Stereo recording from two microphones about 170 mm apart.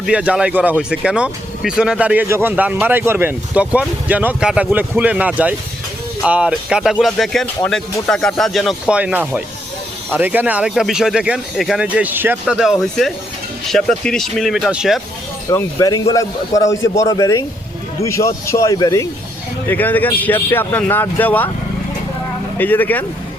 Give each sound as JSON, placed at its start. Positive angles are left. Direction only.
{"t": 0.0, "sound": "speech", "side_deg": -5}
{"t": 15.4, "sound": "a man's voice", "side_deg": 20}
{"t": 22.5, "sound": "speech", "side_deg": 10}